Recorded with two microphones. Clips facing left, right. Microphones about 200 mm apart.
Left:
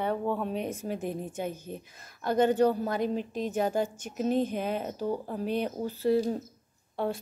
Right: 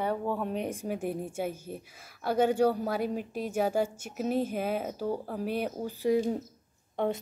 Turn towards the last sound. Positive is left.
turn(degrees=-20)  # may be behind; listen again after turning